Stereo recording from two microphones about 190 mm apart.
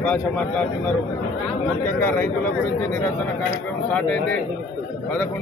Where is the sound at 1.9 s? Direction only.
10° left (ahead or behind).